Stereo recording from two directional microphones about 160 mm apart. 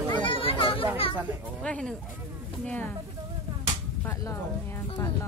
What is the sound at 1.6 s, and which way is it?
Speech, 5° left (ahead or behind).